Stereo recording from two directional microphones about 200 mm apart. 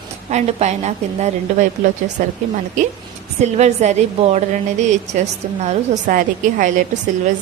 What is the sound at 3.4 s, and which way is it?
A woman's voice, 35° right (ahead or behind).